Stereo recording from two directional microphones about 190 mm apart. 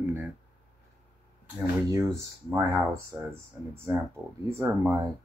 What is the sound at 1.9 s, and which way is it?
Speech, 15° right (ahead or behind).